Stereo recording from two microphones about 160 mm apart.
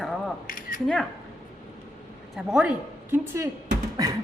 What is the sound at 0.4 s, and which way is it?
Camera, 60° left (ahead or behind).